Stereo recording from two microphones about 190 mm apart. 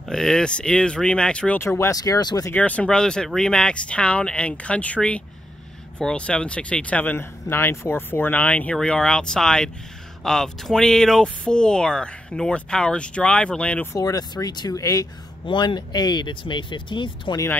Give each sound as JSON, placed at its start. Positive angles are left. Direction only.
{"t": 0.1, "sound": "speech", "side_deg": 5}
{"t": 13.9, "sound": "speech", "side_deg": 20}